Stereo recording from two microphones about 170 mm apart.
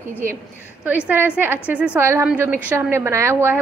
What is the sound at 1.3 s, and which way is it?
A woman's voice, 10° right (ahead or behind).